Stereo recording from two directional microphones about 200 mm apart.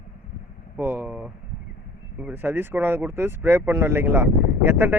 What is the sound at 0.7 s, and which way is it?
Speech, 10° right (ahead or behind).